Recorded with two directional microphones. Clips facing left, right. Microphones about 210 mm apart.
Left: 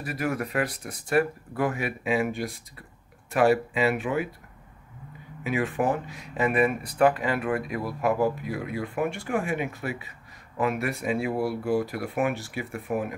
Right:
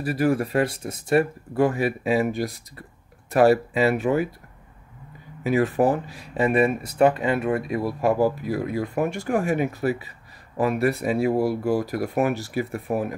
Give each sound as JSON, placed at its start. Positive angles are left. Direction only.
{"t": 0.0, "sound": "speech", "side_deg": -30}
{"t": 5.4, "sound": "speech", "side_deg": -40}